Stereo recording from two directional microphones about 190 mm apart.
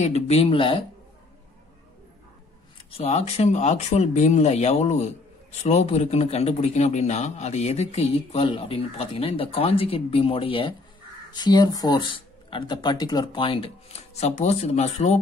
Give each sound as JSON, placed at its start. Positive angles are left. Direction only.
{"t": 0.0, "sound": "a man's voice", "side_deg": 35}
{"t": 2.9, "sound": "a man's voice", "side_deg": 35}